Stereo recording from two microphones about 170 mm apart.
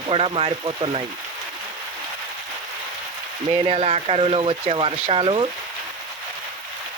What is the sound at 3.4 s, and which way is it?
Speech, 30° right (ahead or behind).